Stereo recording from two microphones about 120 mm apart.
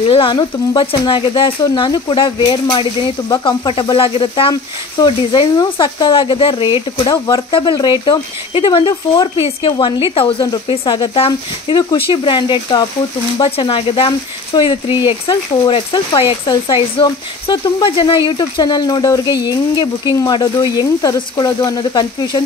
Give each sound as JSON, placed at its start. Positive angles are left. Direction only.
{"t": 0.1, "sound": "speech", "side_deg": 45}
{"t": 7.2, "sound": "speech", "side_deg": 35}